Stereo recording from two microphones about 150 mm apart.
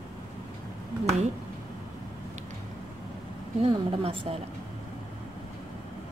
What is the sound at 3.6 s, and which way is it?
Speech, 35° right (ahead or behind).